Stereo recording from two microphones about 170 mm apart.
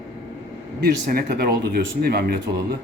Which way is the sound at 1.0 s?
65° right (ahead or behind).